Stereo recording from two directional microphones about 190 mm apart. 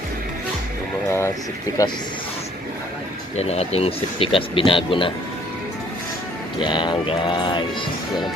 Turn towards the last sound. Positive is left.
turn(degrees=25)  # may be behind; listen again after turning